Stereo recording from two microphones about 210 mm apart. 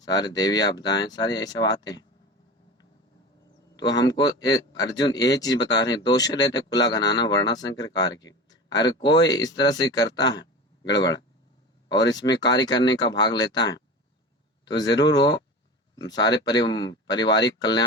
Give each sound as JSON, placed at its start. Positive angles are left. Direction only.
{"t": 0.0, "sound": "speech", "side_deg": 20}
{"t": 3.8, "sound": "a man's voice", "side_deg": 55}
{"t": 4.0, "sound": "speech", "side_deg": 20}
{"t": 11.9, "sound": "speech", "side_deg": 20}
{"t": 14.9, "sound": "speech", "side_deg": 20}